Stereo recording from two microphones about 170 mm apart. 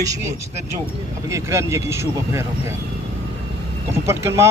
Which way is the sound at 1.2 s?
15° right (ahead or behind).